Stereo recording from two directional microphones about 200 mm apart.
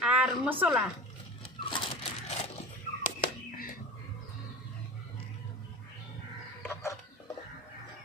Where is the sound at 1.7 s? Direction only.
30° left (ahead or behind).